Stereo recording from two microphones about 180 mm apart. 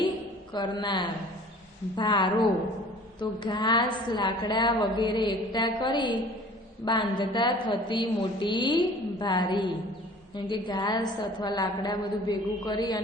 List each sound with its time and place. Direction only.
0.5 s a woman's voice: 25° left (ahead or behind)